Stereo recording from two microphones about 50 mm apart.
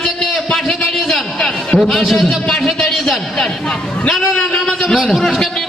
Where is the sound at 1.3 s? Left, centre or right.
Centre.